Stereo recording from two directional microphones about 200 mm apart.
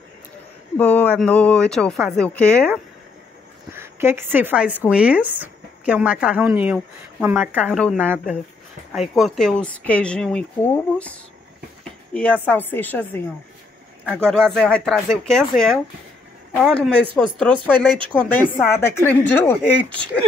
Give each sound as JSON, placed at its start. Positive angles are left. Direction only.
{"t": 0.7, "sound": "speech", "side_deg": 5}
{"t": 3.7, "sound": "speech", "side_deg": -10}
{"t": 17.6, "sound": "speech", "side_deg": -25}
{"t": 18.1, "sound": "a woman's voice", "side_deg": 10}